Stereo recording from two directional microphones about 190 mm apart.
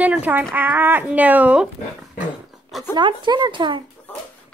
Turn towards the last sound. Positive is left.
turn(degrees=-25)  # may be behind; listen again after turning